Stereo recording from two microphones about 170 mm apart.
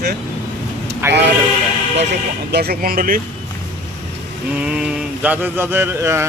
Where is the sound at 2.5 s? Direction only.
65° right (ahead or behind).